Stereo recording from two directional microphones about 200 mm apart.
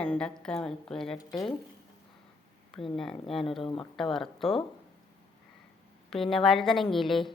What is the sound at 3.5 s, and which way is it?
Speech, 25° left (ahead or behind).